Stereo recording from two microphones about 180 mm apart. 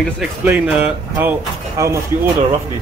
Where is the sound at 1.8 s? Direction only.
15° right (ahead or behind).